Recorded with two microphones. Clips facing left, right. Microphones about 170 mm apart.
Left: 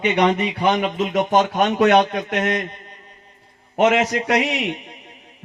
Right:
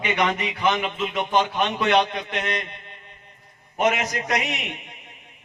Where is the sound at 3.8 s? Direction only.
75° left (ahead or behind).